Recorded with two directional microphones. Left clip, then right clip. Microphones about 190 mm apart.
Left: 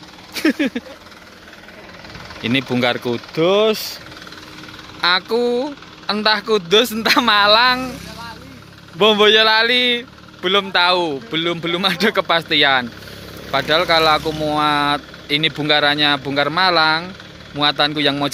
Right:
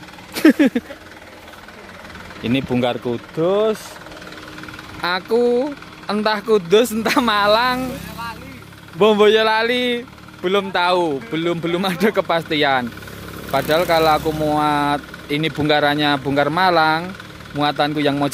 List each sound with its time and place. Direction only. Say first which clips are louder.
0.3 s speech: right 5 dB; 30° right (ahead or behind)
2.4 s speech: left 2 dB; centre (ahead or behind)
5.0 s speech: left 1 dB; 10° right (ahead or behind)
8.9 s speech: left 1 dB; 10° right (ahead or behind)